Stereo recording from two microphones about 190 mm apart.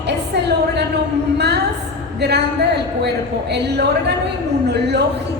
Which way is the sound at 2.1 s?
60° right (ahead or behind).